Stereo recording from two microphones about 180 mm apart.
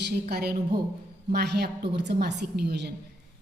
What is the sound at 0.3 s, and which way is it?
A woman's voice, 60° right (ahead or behind).